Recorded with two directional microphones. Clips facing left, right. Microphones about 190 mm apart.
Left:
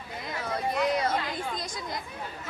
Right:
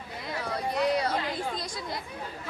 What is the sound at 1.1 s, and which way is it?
Speech, 40° right (ahead or behind).